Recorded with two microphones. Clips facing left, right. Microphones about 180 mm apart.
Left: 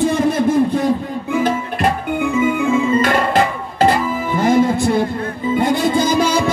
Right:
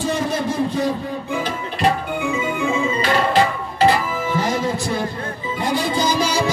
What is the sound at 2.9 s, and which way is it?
Music, 50° left (ahead or behind).